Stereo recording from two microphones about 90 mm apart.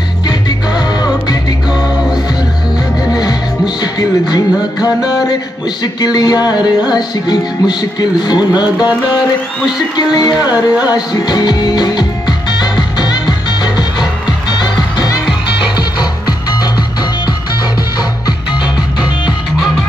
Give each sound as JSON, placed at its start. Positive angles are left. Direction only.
{"t": 0.3, "sound": "music", "side_deg": 50}
{"t": 3.1, "sound": "music", "side_deg": 50}
{"t": 5.9, "sound": "speech", "side_deg": 50}
{"t": 10.9, "sound": "music", "side_deg": 50}